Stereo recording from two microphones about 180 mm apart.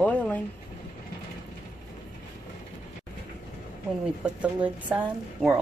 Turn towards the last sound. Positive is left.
turn(degrees=-5)  # may be behind; listen again after turning